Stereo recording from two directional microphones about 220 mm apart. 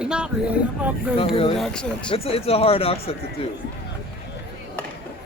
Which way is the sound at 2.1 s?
25° left (ahead or behind).